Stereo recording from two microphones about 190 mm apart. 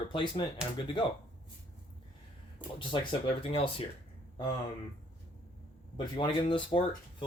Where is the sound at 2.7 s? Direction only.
25° left (ahead or behind).